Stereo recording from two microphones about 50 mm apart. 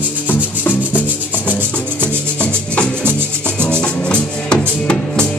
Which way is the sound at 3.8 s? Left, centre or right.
Left.